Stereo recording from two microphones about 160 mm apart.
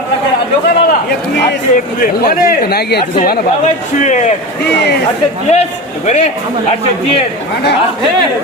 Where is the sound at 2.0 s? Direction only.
70° left (ahead or behind).